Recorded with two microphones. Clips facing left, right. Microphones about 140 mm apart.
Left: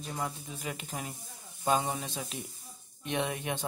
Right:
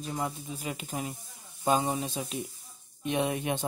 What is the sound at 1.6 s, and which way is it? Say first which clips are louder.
Speech: right 2 dB; 5° right (ahead or behind).